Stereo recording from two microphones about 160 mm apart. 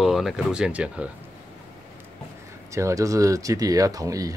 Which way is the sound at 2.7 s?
20° right (ahead or behind).